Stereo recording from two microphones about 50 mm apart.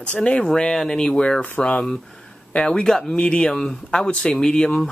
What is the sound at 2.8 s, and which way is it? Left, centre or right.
Speech, centre.